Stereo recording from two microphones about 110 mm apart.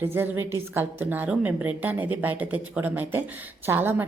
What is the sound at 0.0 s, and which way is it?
A woman's voice, 20° right (ahead or behind).